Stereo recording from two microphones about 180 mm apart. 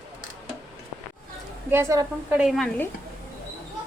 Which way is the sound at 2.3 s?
Centre (ahead or behind).